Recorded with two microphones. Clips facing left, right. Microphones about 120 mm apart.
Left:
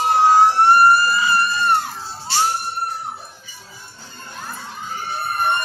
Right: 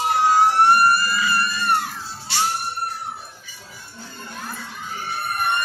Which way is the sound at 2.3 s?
30° left (ahead or behind).